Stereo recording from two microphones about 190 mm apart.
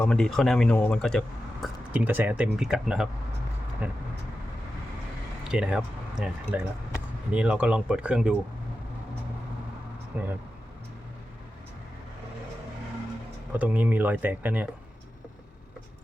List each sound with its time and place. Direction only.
0.0 s speech: 5° left (ahead or behind)
1.6 s speech: 5° right (ahead or behind)
5.5 s speech: 5° right (ahead or behind)
10.1 s speech: 10° right (ahead or behind)
13.5 s speech: 10° right (ahead or behind)